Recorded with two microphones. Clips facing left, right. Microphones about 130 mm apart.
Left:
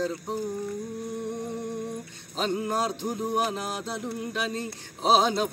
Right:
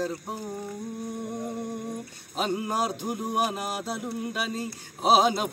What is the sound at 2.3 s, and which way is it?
Music, 10° right (ahead or behind).